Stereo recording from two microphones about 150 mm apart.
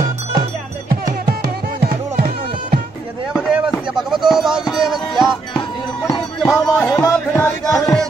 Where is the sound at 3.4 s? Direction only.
5° right (ahead or behind).